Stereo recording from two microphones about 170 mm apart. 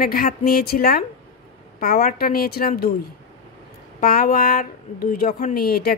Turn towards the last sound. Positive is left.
turn(degrees=65)  # may be behind; listen again after turning